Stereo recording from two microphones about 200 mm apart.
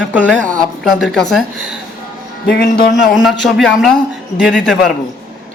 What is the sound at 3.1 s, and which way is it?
A woman's voice, centre (ahead or behind).